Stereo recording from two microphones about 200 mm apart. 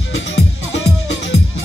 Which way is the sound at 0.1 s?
70° left (ahead or behind).